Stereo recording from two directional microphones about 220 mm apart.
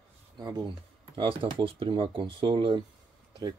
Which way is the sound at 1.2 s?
25° right (ahead or behind).